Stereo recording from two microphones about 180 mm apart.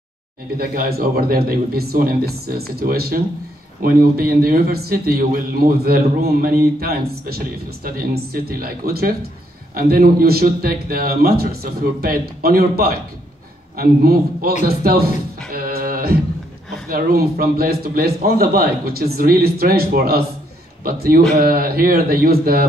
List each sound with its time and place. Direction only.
0.6 s a man's voice: 55° right (ahead or behind)
14.8 s music: 55° right (ahead or behind)
16.9 s a man's voice: 55° right (ahead or behind)